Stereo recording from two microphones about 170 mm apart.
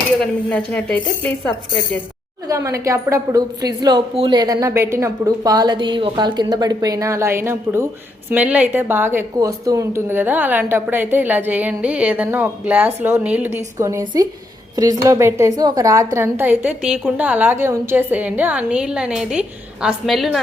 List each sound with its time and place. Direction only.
0.2 s speech: 5° left (ahead or behind)
2.5 s a woman's voice: 20° right (ahead or behind); by 20.4 s centre (ahead or behind)